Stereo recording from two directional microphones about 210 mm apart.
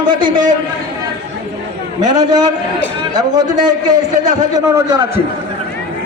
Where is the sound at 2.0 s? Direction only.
20° right (ahead or behind).